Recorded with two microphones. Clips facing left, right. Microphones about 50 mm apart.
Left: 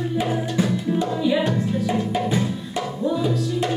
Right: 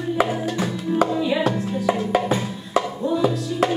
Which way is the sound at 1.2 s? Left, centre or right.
Centre.